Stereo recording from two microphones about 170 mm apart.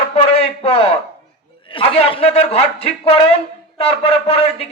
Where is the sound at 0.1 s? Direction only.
35° left (ahead or behind).